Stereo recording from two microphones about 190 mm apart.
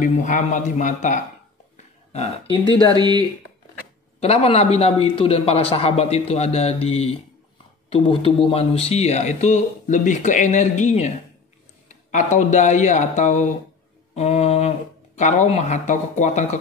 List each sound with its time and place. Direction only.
0.0 s speech: 40° left (ahead or behind)
3.0 s speech: 20° right (ahead or behind)
4.2 s speech: 30° left (ahead or behind)